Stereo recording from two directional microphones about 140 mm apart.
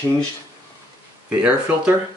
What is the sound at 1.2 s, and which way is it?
Speech, 5° right (ahead or behind).